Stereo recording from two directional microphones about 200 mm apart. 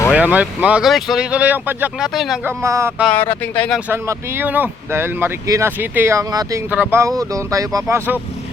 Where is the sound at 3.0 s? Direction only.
5° left (ahead or behind).